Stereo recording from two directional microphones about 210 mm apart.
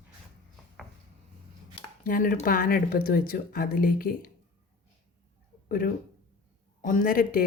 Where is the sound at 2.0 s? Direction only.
40° left (ahead or behind).